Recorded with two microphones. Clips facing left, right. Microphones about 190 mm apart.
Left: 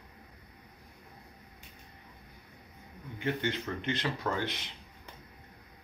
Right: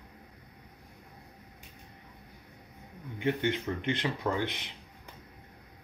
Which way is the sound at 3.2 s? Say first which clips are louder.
Right 3 dB; 15° right (ahead or behind).